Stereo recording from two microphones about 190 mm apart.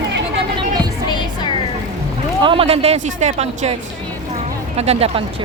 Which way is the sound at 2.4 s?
30° right (ahead or behind).